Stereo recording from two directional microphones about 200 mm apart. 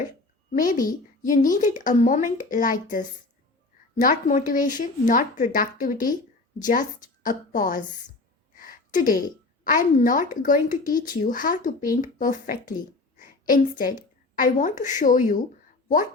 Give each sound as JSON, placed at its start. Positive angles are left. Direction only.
{"t": 0.5, "sound": "a woman's voice", "side_deg": 45}
{"t": 4.0, "sound": "a woman's voice", "side_deg": 40}
{"t": 8.5, "sound": "a sound", "side_deg": 45}
{"t": 9.6, "sound": "a woman's voice", "side_deg": 45}